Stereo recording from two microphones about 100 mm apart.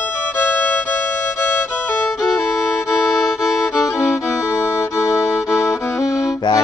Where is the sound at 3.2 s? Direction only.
Centre (ahead or behind).